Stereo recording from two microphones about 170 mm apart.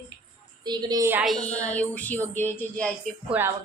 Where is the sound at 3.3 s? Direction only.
15° right (ahead or behind).